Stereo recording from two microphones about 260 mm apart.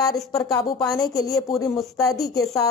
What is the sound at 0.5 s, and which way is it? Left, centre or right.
Speech, centre.